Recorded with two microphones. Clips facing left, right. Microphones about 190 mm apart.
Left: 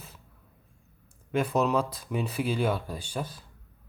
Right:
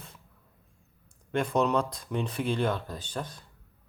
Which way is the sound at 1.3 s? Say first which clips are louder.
Left 1 dB; 5° left (ahead or behind).